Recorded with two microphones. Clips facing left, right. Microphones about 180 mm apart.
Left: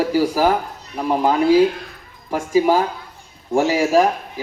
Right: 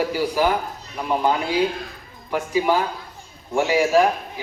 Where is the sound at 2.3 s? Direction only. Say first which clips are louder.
Left 4 dB; 40° left (ahead or behind).